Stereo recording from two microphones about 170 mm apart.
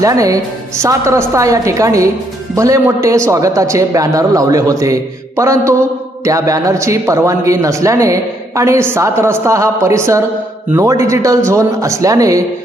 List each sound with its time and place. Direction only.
0.0 s a man's voice: 20° right (ahead or behind)